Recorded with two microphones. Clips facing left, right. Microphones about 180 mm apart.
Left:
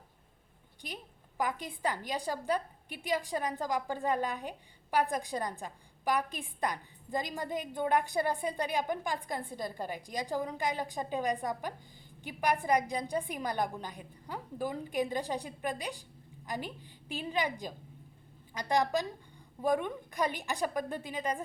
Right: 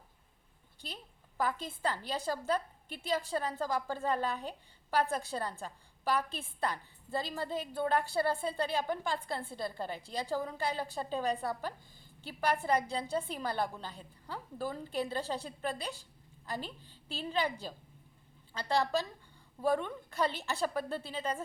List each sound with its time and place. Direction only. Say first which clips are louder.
0.8 s a woman's voice: left 3 dB; 15° left (ahead or behind)